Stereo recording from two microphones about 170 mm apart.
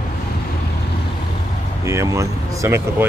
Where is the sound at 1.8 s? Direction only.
15° right (ahead or behind).